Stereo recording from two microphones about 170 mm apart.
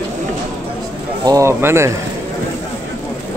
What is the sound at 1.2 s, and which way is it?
Speech, 15° right (ahead or behind).